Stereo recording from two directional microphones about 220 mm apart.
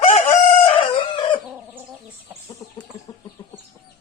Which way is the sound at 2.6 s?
20° left (ahead or behind).